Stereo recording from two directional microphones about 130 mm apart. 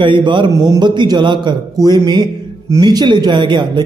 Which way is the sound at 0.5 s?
25° right (ahead or behind).